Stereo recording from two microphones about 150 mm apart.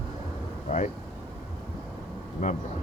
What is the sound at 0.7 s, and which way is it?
Vehicle, 50° left (ahead or behind).